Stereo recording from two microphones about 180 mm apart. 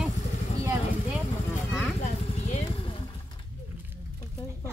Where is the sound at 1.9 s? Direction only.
40° left (ahead or behind).